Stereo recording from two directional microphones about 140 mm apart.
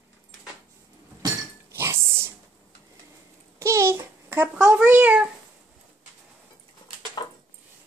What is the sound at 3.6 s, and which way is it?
Babbling, 20° right (ahead or behind).